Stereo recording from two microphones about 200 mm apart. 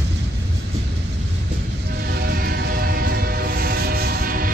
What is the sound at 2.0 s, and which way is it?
Train, 50° right (ahead or behind).